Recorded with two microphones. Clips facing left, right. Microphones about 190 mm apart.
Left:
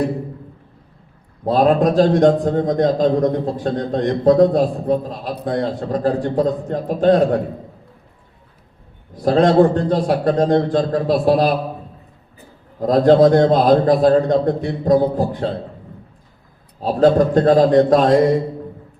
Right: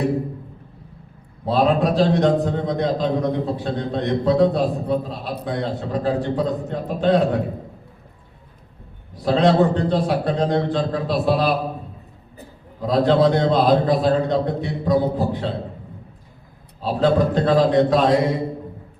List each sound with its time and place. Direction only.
1.5 s a man's voice: 45° left (ahead or behind)
9.2 s a man's voice: 45° left (ahead or behind)
12.8 s a man's voice: 45° left (ahead or behind)
16.8 s a man's voice: 45° left (ahead or behind)